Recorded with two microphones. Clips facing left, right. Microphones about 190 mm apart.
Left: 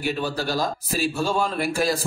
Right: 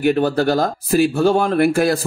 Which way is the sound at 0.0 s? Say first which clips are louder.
Right 10 dB; 60° right (ahead or behind).